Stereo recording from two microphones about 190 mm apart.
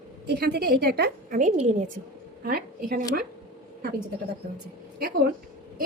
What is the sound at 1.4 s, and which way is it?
Speech, 40° right (ahead or behind).